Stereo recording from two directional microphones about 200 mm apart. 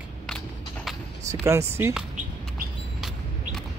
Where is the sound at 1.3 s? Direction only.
15° right (ahead or behind).